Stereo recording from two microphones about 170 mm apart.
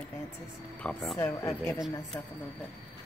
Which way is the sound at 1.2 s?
15° left (ahead or behind).